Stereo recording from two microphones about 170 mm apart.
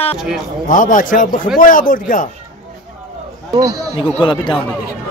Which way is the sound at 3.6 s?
20° right (ahead or behind).